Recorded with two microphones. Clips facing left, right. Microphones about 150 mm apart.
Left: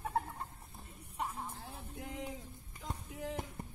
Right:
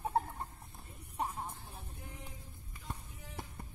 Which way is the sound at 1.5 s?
90° left.